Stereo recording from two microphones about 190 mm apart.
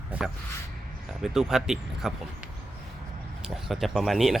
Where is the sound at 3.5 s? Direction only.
Centre (ahead or behind).